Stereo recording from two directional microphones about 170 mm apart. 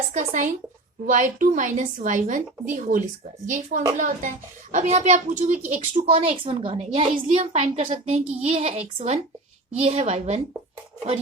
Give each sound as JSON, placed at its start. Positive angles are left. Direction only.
{"t": 0.1, "sound": "a woman's voice", "side_deg": -50}